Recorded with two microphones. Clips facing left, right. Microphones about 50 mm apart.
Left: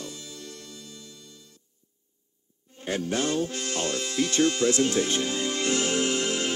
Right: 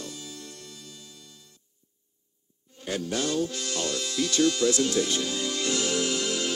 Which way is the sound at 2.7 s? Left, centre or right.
Left.